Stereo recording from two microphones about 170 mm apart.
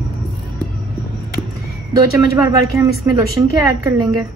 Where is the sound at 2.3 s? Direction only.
20° right (ahead or behind).